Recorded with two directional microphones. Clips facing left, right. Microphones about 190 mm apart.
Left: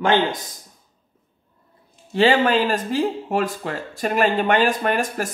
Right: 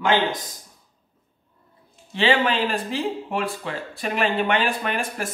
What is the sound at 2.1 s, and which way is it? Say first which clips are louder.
Speech: left 4 dB; 45° left (ahead or behind).